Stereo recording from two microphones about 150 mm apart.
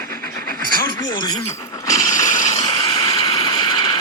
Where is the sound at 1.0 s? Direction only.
30° left (ahead or behind).